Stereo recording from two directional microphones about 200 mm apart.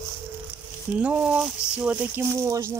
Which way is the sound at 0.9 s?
5° right (ahead or behind).